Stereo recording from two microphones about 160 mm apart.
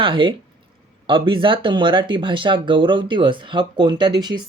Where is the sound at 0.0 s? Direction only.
30° right (ahead or behind).